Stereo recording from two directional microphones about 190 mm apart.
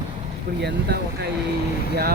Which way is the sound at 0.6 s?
60° right (ahead or behind).